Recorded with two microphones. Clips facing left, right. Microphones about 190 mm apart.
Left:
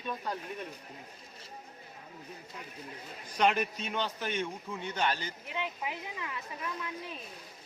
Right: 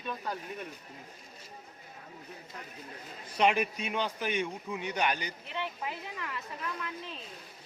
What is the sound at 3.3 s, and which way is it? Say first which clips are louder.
A man's voice: right 1 dB; 10° right (ahead or behind).